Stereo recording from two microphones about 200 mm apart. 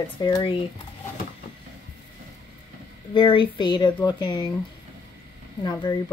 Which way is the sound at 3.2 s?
25° left (ahead or behind).